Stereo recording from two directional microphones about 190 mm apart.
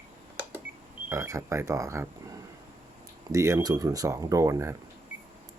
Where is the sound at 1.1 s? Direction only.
15° right (ahead or behind).